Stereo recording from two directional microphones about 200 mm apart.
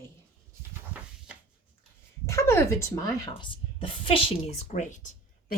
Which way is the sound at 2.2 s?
15° left (ahead or behind).